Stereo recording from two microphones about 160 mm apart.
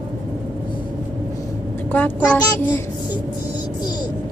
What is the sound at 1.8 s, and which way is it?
Speech, 10° left (ahead or behind).